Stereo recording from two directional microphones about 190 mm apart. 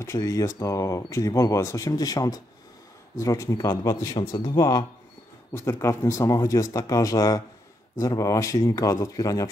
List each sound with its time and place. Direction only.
0.0 s speech: 15° left (ahead or behind)